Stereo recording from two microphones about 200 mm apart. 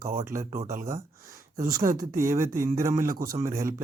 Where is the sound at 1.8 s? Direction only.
45° right (ahead or behind).